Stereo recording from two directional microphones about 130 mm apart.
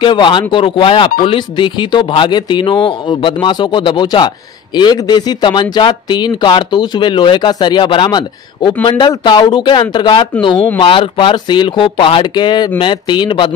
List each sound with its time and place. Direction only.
0.0 s speech: 35° left (ahead or behind)